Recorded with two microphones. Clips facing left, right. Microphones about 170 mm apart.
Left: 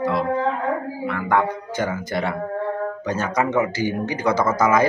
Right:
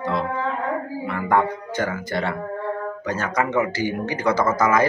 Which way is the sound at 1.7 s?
15° left (ahead or behind).